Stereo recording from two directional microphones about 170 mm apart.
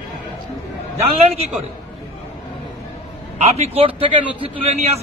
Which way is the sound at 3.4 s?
40° right (ahead or behind).